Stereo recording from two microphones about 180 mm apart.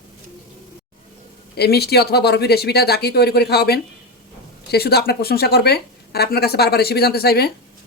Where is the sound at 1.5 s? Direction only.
65° left (ahead or behind).